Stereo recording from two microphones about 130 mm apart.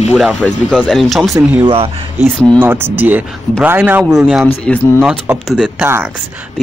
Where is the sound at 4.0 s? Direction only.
Centre (ahead or behind).